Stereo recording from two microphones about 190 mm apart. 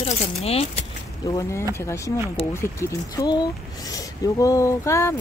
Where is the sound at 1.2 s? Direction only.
15° left (ahead or behind).